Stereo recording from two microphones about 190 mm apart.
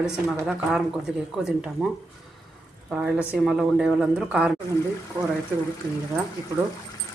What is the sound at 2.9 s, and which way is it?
A woman's voice, 5° right (ahead or behind).